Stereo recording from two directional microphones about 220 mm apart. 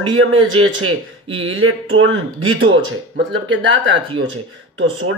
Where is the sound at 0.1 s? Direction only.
65° right (ahead or behind).